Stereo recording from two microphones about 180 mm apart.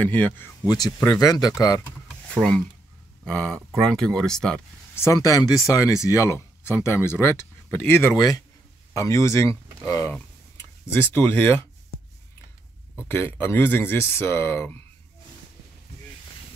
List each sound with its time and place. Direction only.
0.0 s speech: 10° left (ahead or behind)
0.7 s speech: 20° left (ahead or behind)
3.3 s speech: 5° left (ahead or behind)
4.9 s speech: 15° left (ahead or behind)
13.1 s speech: 15° left (ahead or behind)